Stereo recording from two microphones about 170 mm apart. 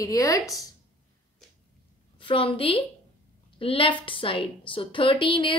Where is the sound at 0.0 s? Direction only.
20° left (ahead or behind).